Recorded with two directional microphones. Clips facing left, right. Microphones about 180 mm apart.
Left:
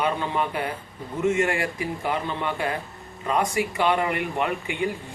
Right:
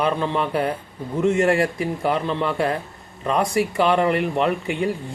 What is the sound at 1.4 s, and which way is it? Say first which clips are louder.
Speech: right 6 dB; 35° right (ahead or behind).